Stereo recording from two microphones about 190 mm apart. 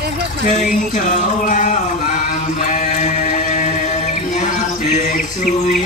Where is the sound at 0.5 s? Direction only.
40° left (ahead or behind).